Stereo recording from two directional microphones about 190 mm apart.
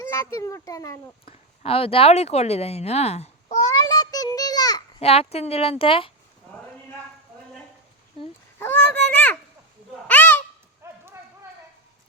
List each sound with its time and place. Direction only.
0.0 s speech: 15° left (ahead or behind)
1.2 s speech: 30° left (ahead or behind)
3.7 s child singing: 20° left (ahead or behind)
4.9 s speech: 30° left (ahead or behind)
8.5 s a sound: 10° left (ahead or behind)
10.8 s clip-clop: 15° right (ahead or behind)